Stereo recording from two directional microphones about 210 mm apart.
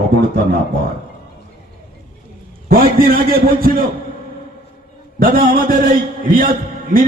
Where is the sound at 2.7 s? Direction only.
45° right (ahead or behind).